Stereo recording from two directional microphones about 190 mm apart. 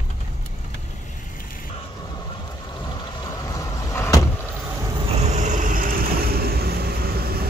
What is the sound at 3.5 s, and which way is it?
Vehicle, 15° left (ahead or behind).